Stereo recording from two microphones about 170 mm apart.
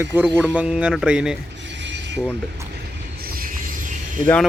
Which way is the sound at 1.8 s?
90° right.